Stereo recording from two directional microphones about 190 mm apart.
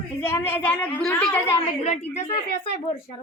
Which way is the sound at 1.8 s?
40° left (ahead or behind).